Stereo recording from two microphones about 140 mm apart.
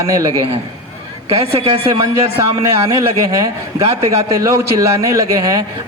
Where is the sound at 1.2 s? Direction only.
40° right (ahead or behind).